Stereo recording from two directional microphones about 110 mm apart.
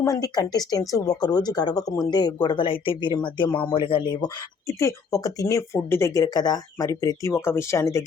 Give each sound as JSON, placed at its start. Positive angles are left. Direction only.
{"t": 0.0, "sound": "speech", "side_deg": 30}